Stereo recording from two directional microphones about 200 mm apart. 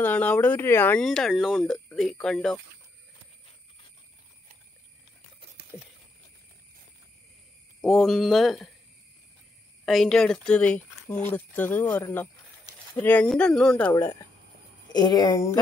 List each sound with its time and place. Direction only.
0.0 s speech: 10° left (ahead or behind)
7.8 s speech: centre (ahead or behind)
9.8 s speech: centre (ahead or behind)
14.9 s a woman's voice: 20° left (ahead or behind)